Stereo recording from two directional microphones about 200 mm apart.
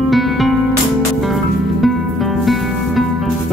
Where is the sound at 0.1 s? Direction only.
Centre (ahead or behind).